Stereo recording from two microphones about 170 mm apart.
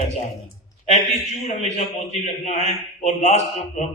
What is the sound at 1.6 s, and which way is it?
A man's voice, 40° left (ahead or behind).